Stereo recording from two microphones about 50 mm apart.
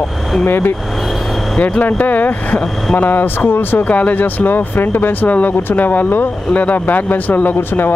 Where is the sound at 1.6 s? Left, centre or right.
Left.